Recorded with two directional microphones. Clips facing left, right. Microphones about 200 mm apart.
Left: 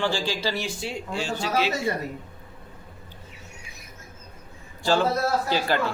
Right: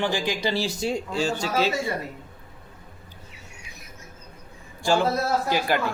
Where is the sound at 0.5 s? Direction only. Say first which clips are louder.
Right 5 dB; 40° right (ahead or behind).